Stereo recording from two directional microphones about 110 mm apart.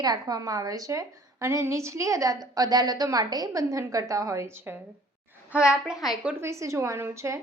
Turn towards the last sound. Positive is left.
turn(degrees=-25)  # may be behind; listen again after turning